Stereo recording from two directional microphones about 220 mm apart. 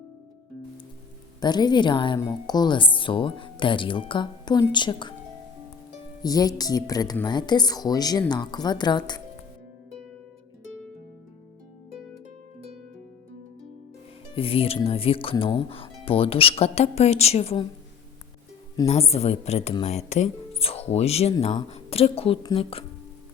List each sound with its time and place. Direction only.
1.4 s speech: 20° left (ahead or behind)
6.2 s speech: 15° left (ahead or behind)
14.3 s speech: 25° left (ahead or behind)
18.9 s speech: 30° left (ahead or behind)